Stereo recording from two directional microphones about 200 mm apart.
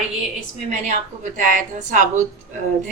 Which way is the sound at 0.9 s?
40° right (ahead or behind).